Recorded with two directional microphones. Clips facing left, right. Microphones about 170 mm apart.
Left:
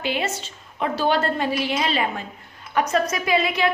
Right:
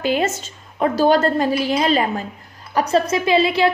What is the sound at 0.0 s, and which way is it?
A woman's voice, 45° right (ahead or behind).